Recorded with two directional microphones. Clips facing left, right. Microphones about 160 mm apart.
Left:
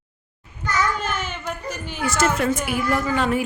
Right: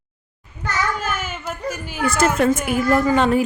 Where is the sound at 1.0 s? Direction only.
5° right (ahead or behind).